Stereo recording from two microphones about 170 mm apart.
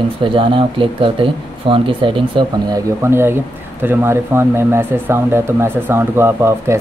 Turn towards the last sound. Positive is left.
turn(degrees=-15)  # may be behind; listen again after turning